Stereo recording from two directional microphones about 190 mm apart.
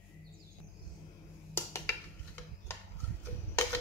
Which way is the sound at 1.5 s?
10° left (ahead or behind).